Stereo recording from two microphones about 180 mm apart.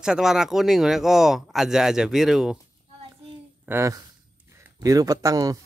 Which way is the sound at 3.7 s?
15° right (ahead or behind).